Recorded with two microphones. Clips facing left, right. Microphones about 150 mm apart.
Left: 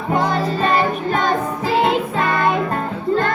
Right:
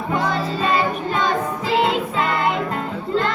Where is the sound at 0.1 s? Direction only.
45° left (ahead or behind).